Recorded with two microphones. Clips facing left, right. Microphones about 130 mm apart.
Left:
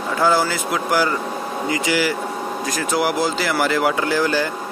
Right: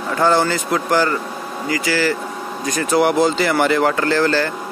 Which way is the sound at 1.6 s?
20° left (ahead or behind).